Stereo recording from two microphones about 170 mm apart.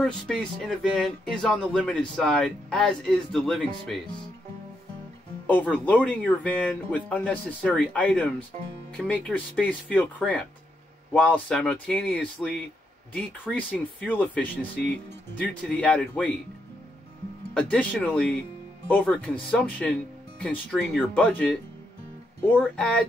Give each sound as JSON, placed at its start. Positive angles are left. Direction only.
{"t": 0.0, "sound": "speech", "side_deg": 5}
{"t": 5.5, "sound": "speech", "side_deg": 10}
{"t": 17.6, "sound": "speech", "side_deg": 5}
{"t": 22.8, "sound": "speech", "side_deg": 5}